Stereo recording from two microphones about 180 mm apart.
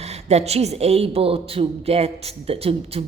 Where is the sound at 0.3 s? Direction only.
35° right (ahead or behind).